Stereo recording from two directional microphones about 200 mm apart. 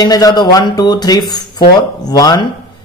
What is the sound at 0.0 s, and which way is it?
A man's voice, 20° left (ahead or behind).